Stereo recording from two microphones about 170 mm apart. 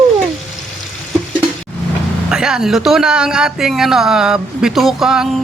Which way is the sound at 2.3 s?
5° right (ahead or behind).